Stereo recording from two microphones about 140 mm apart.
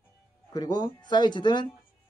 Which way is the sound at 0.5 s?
25° left (ahead or behind).